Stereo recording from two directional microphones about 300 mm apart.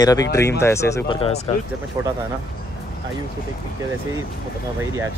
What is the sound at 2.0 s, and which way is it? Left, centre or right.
Speech, centre.